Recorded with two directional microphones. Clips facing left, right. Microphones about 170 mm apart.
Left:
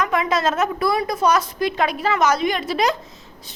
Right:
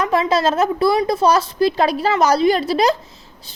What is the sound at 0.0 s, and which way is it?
A woman's voice, 30° right (ahead or behind).